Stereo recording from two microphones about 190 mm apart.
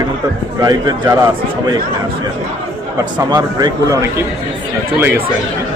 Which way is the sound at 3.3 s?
20° right (ahead or behind).